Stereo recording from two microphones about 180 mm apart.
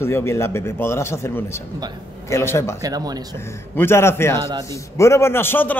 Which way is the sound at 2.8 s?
20° right (ahead or behind).